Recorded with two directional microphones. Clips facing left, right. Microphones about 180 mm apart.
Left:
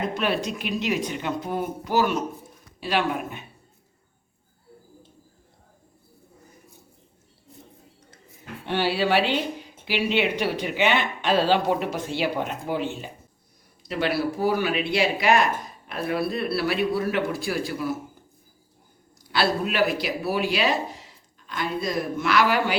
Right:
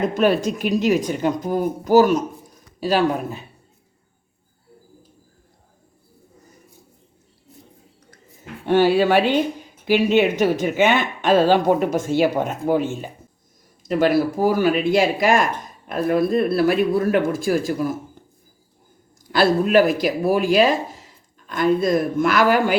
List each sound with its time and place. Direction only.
0.0 s speech: 45° right (ahead or behind)
8.6 s speech: 45° right (ahead or behind)
19.3 s speech: 45° right (ahead or behind)